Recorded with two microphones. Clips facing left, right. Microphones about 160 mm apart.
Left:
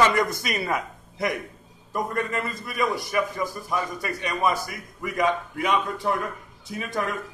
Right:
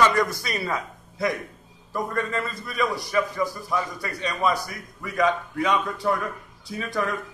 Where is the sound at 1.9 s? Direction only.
20° left (ahead or behind).